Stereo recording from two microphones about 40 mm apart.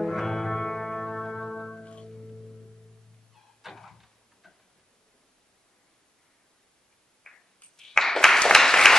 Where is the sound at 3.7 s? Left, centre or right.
Centre.